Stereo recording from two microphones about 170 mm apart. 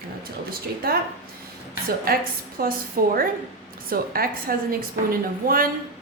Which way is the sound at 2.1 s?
60° right (ahead or behind).